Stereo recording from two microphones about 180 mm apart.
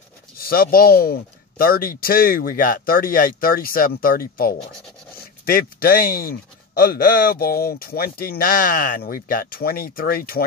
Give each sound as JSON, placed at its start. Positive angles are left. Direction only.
{"t": 0.4, "sound": "speech", "side_deg": 55}